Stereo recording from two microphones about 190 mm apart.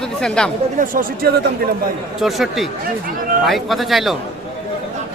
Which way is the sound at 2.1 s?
Centre (ahead or behind).